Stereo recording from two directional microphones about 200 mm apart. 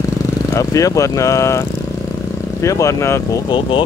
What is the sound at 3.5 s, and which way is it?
Speech, 25° left (ahead or behind).